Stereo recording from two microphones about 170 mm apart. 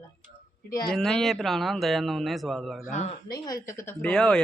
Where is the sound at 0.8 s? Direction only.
Centre (ahead or behind).